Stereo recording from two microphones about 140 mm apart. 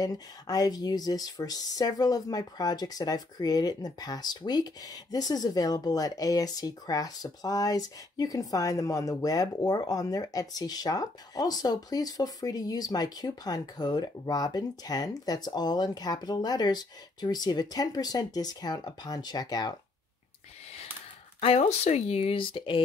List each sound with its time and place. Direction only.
0.0 s speech: 25° left (ahead or behind)
21.4 s speech: 45° left (ahead or behind)